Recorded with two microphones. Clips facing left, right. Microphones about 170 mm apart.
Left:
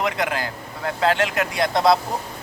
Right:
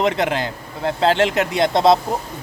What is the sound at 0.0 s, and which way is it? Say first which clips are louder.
Speech: right 5 dB; 25° right (ahead or behind).